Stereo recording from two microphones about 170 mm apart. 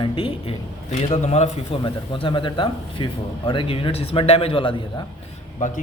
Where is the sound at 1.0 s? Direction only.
40° left (ahead or behind).